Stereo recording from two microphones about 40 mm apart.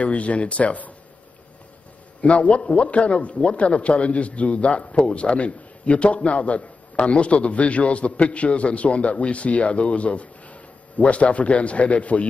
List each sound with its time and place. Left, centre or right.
0.0 s a man's voice: left
2.2 s a man's voice: left